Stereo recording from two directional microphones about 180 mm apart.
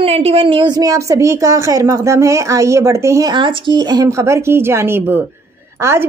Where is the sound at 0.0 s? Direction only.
35° right (ahead or behind).